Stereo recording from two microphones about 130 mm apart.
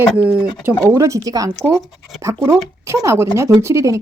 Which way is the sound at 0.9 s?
20° right (ahead or behind).